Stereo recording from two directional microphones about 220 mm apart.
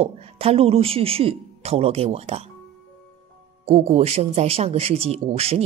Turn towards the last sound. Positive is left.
turn(degrees=-25)  # may be behind; listen again after turning